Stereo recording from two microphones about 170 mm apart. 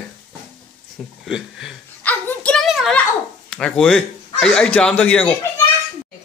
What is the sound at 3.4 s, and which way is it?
Speech, 5° left (ahead or behind).